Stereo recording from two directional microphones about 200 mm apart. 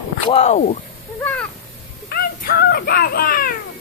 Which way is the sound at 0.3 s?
35° left (ahead or behind).